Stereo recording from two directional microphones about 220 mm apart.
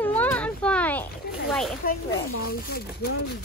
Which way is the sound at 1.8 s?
40° left (ahead or behind).